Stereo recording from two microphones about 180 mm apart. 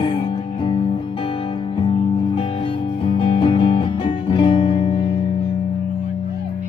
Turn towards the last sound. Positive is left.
turn(degrees=30)  # may be behind; listen again after turning